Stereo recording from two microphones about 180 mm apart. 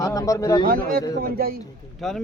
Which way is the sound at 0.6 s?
55° right (ahead or behind).